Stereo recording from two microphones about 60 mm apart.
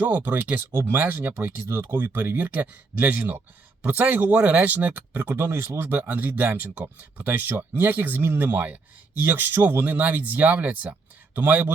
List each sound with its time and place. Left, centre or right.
0.0 s speech: right
0.9 s speech: right
5.8 s speech: right